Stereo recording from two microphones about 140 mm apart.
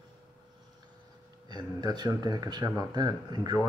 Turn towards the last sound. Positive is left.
turn(degrees=-30)  # may be behind; listen again after turning